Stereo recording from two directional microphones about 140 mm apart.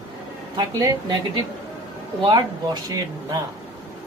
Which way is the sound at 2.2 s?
30° right (ahead or behind).